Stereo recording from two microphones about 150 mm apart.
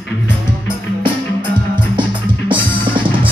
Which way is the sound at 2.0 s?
35° right (ahead or behind).